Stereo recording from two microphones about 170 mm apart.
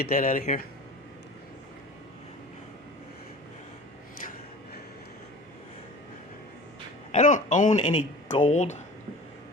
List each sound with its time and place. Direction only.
0.0 s speech: 55° left (ahead or behind)
7.1 s speech: 50° left (ahead or behind)